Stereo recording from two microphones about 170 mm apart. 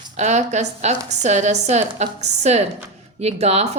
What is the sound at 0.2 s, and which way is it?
Speech, 40° right (ahead or behind).